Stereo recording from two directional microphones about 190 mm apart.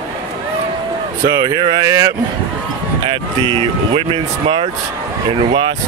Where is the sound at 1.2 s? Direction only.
20° right (ahead or behind).